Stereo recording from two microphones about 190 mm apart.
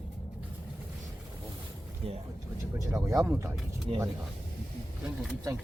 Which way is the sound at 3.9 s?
30° right (ahead or behind).